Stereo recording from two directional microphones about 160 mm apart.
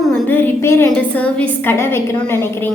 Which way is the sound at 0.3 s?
10° left (ahead or behind).